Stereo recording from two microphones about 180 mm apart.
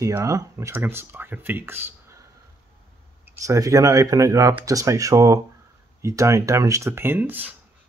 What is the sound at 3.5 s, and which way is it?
Speech, 20° right (ahead or behind).